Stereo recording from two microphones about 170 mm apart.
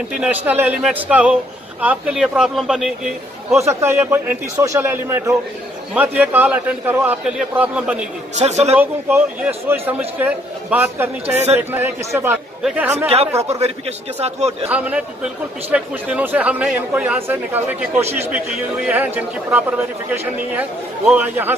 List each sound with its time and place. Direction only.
0.5 s a man's voice: 10° right (ahead or behind)
3.5 s a man's voice: 15° right (ahead or behind)
8.4 s speech: 40° right (ahead or behind)
8.7 s a man's voice: 10° right (ahead or behind)
13.4 s speech: 40° right (ahead or behind)
14.7 s a man's voice: 10° right (ahead or behind)